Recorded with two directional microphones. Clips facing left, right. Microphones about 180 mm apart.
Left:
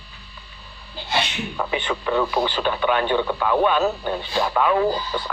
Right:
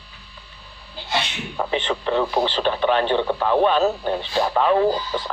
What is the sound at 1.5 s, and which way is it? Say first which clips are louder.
Speech: right 3 dB; 35° right (ahead or behind).